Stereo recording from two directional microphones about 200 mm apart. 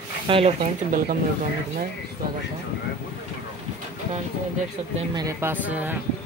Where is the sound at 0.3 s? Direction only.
25° right (ahead or behind).